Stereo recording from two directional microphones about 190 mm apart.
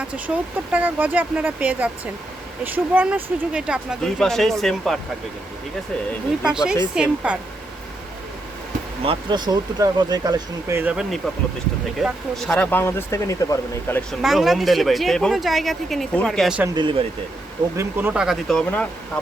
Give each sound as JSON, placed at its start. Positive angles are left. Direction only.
{"t": 0.7, "sound": "speech", "side_deg": -10}
{"t": 6.4, "sound": "speech", "side_deg": -5}
{"t": 9.0, "sound": "speech", "side_deg": -25}
{"t": 14.1, "sound": "speech", "side_deg": 0}
{"t": 16.7, "sound": "speech", "side_deg": -25}
{"t": 17.7, "sound": "speech", "side_deg": -10}